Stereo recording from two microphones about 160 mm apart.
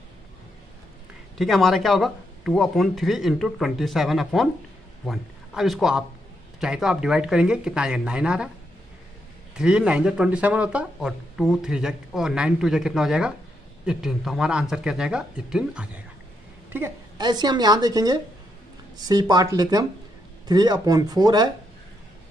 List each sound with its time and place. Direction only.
1.4 s speech: centre (ahead or behind)
9.6 s speech: 5° right (ahead or behind)
17.2 s a woman's voice: 25° right (ahead or behind)